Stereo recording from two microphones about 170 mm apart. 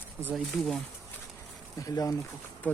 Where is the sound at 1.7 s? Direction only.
20° left (ahead or behind).